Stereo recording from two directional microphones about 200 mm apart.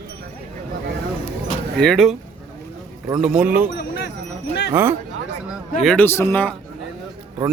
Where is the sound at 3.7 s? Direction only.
60° left (ahead or behind).